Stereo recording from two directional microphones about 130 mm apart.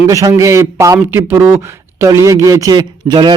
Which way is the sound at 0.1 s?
25° right (ahead or behind).